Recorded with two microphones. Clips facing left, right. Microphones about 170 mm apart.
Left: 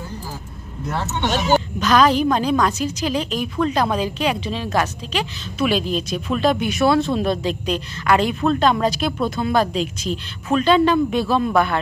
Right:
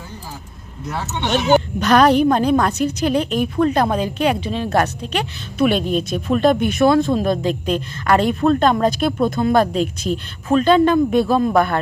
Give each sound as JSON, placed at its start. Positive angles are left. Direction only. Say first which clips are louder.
{"t": 1.8, "sound": "a woman's voice", "louder": "right 2 dB", "side_deg": -60}